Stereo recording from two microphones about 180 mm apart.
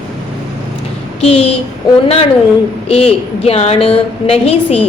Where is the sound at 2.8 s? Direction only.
35° left (ahead or behind).